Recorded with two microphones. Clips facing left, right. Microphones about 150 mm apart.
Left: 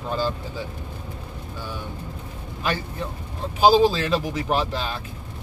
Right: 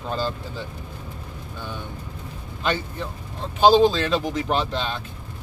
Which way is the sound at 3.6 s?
5° left (ahead or behind).